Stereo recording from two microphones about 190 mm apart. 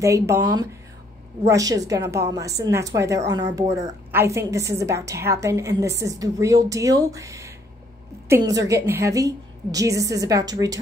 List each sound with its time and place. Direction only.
0.0 s a woman's voice: 15° right (ahead or behind)